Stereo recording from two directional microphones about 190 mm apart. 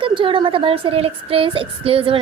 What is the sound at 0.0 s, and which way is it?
Speech, 25° right (ahead or behind).